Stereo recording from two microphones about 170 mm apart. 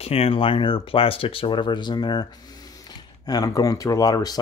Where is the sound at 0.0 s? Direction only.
35° left (ahead or behind).